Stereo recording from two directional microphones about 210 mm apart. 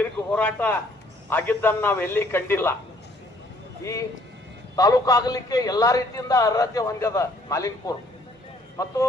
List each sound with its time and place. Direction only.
0.0 s a man's voice: 5° left (ahead or behind)
4.8 s a man's voice: 15° left (ahead or behind)